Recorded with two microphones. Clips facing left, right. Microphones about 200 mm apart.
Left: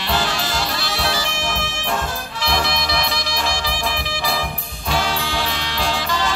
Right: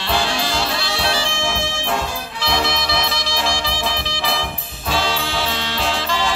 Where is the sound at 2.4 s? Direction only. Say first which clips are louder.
Right 1 dB; 25° right (ahead or behind).